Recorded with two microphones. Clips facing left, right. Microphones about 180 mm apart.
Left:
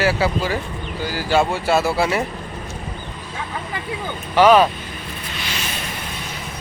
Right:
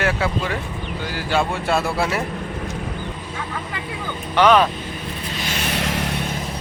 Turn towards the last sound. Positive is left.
turn(degrees=-80)